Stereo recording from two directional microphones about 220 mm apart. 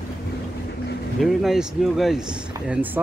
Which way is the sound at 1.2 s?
Centre (ahead or behind).